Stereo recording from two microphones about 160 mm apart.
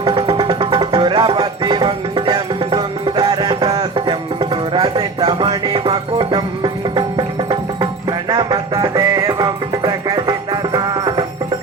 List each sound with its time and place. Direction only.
0.0 s music: 30° right (ahead or behind)